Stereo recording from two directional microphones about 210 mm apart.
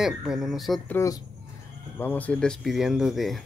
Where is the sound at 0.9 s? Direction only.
15° left (ahead or behind).